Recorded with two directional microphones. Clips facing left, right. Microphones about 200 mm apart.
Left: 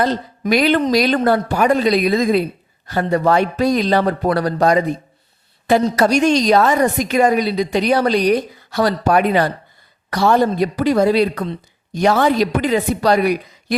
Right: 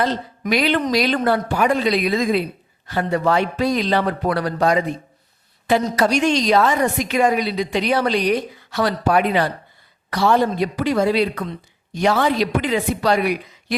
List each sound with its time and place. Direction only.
0.0 s a woman's voice: 45° left (ahead or behind)